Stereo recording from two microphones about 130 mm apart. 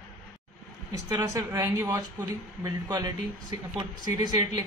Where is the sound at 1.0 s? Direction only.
25° right (ahead or behind).